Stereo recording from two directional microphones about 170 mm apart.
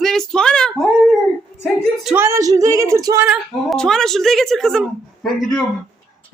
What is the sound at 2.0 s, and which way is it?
Speech, 15° right (ahead or behind).